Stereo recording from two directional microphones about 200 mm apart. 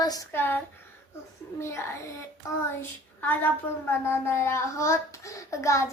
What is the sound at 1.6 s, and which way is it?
Speech, 15° left (ahead or behind).